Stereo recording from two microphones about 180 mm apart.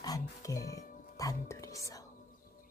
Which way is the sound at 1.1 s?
20° left (ahead or behind).